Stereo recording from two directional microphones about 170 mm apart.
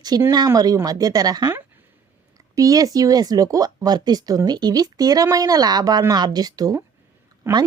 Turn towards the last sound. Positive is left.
turn(degrees=-15)  # may be behind; listen again after turning